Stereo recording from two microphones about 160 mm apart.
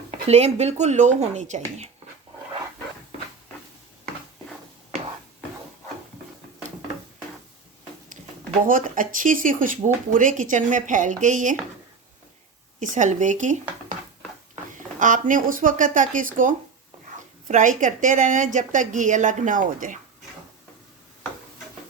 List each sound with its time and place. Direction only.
0.1 s speech: 40° right (ahead or behind)
8.6 s speech: 60° right (ahead or behind)
12.8 s speech: 50° right (ahead or behind)
14.8 s speech: 55° right (ahead or behind)